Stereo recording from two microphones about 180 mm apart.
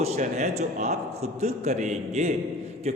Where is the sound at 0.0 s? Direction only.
40° right (ahead or behind).